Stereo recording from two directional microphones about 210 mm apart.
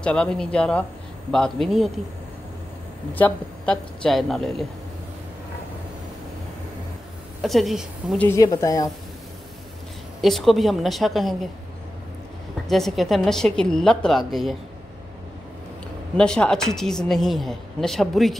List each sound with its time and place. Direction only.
0.0 s speech: 5° left (ahead or behind)
3.2 s speech: 5° left (ahead or behind)
7.4 s speech: centre (ahead or behind)
8.3 s a woman's voice: 15° left (ahead or behind)
10.2 s speech: centre (ahead or behind)
12.6 s speech: centre (ahead or behind)
16.2 s speech: 5° left (ahead or behind)